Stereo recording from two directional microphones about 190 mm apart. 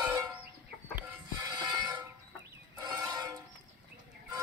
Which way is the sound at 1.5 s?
25° right (ahead or behind).